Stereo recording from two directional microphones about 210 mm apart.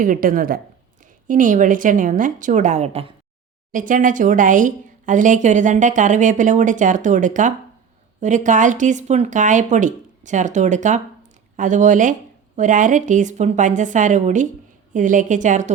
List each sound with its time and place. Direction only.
0.0 s speech: 40° right (ahead or behind)